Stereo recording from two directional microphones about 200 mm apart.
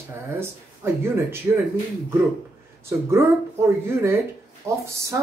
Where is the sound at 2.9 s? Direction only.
15° right (ahead or behind).